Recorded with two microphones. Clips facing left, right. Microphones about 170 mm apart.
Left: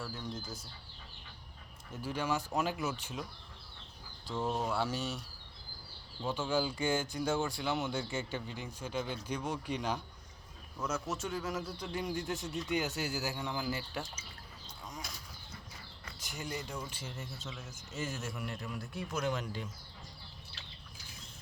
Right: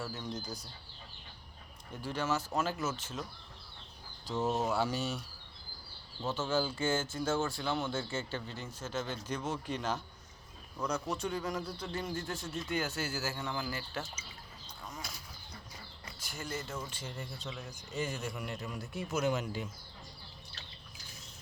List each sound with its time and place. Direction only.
0.0 s speech: centre (ahead or behind)
1.9 s speech: 10° left (ahead or behind)
4.3 s speech: 5° right (ahead or behind)
6.2 s speech: 15° left (ahead or behind)
16.2 s speech: 15° left (ahead or behind); by 19.6 s 5° right (ahead or behind)